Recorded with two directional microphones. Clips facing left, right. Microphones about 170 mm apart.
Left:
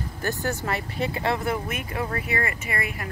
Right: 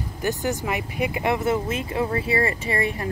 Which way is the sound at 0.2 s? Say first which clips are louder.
Right 3 dB; 15° right (ahead or behind).